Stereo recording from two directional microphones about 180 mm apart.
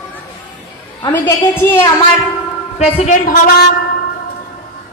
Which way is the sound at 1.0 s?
10° left (ahead or behind).